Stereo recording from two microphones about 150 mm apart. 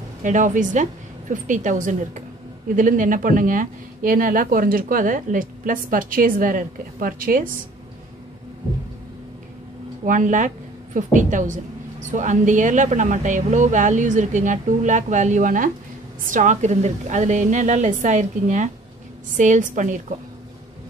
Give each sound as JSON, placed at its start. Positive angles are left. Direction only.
{"t": 0.2, "sound": "speech", "side_deg": -55}
{"t": 10.0, "sound": "a woman's voice", "side_deg": -60}